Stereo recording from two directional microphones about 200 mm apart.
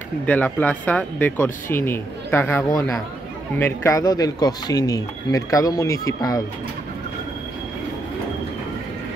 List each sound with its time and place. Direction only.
0.3 s speech: 5° left (ahead or behind)